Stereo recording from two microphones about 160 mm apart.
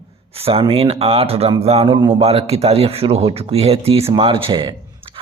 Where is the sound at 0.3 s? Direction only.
35° right (ahead or behind).